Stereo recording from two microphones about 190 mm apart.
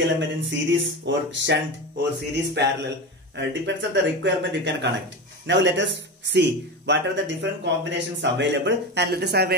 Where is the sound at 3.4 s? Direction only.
70° right (ahead or behind).